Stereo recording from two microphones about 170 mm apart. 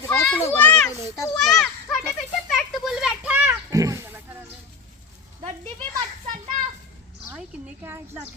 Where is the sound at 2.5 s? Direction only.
Centre (ahead or behind).